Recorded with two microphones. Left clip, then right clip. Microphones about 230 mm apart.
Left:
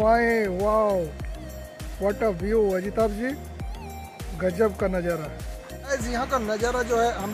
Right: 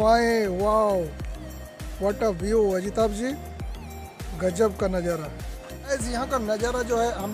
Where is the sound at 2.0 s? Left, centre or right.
Centre.